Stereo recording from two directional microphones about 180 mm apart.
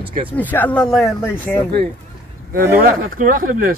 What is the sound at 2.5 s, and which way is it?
Speech, 50° right (ahead or behind).